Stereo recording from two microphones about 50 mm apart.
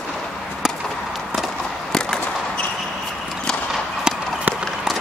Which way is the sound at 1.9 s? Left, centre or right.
Centre.